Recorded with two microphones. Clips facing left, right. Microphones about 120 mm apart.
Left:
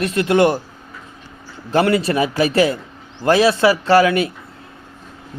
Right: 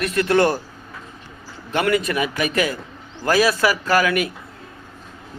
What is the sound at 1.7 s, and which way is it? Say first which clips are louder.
A man's voice: left 4 dB; 30° left (ahead or behind).